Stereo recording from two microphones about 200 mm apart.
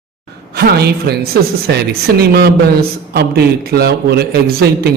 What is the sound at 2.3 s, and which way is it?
Speech, 50° right (ahead or behind).